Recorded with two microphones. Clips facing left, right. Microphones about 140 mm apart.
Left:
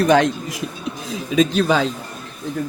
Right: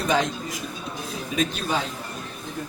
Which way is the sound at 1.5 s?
90° left.